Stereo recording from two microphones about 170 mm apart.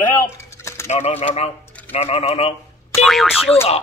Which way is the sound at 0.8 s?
35° left (ahead or behind).